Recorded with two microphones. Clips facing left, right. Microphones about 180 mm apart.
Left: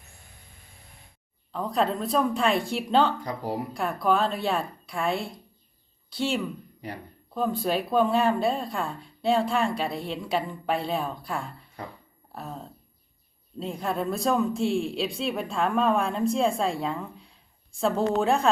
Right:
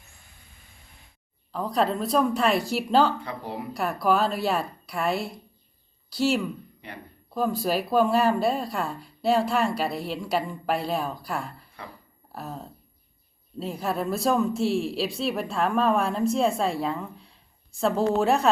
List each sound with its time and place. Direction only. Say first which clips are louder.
1.5 s speech: right 1 dB; centre (ahead or behind)
3.2 s speech: left 3 dB; 40° left (ahead or behind)
3.8 s a woman's voice: right 2 dB; 5° right (ahead or behind)
6.8 s speech: left 5 dB; 40° left (ahead or behind)
7.3 s speech: right 1 dB; 5° right (ahead or behind)